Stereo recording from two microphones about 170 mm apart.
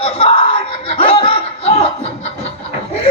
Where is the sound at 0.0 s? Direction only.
35° left (ahead or behind).